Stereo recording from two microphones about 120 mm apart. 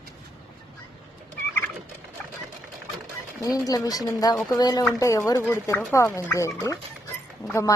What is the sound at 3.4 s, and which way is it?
A woman's voice, 30° left (ahead or behind).